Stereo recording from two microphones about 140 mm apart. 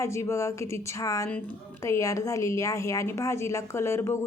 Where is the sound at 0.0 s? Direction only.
20° left (ahead or behind).